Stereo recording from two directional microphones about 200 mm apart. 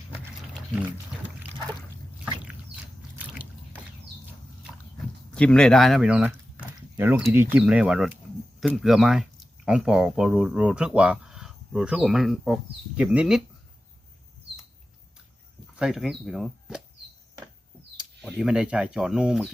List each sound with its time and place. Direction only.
2.2 s rowboat: 5° right (ahead or behind)
5.3 s speech: 5° left (ahead or behind)
15.8 s speech: centre (ahead or behind)
17.9 s speech: centre (ahead or behind)